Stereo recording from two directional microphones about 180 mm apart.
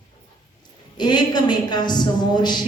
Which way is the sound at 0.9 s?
25° left (ahead or behind).